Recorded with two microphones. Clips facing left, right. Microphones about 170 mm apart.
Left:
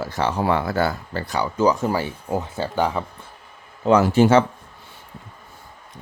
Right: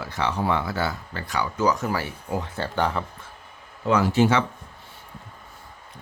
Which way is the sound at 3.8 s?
40° left (ahead or behind).